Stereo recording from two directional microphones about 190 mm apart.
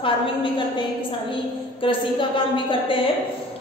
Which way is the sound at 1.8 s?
25° left (ahead or behind).